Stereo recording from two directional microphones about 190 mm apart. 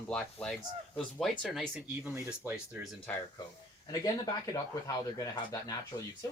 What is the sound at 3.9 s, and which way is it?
Speech, 20° left (ahead or behind).